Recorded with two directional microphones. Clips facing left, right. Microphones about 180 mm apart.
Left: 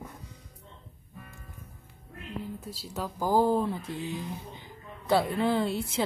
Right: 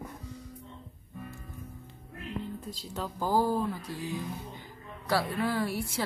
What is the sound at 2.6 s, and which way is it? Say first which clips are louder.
A woman's voice: left 1 dB; 10° left (ahead or behind).